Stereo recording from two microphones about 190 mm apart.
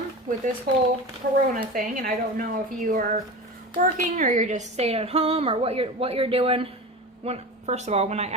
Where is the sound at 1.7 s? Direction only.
45° right (ahead or behind).